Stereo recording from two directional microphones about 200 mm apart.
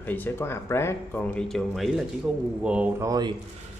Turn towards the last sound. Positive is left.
turn(degrees=-20)  # may be behind; listen again after turning